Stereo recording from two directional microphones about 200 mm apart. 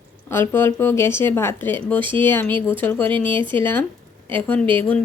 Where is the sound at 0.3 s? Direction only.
10° left (ahead or behind).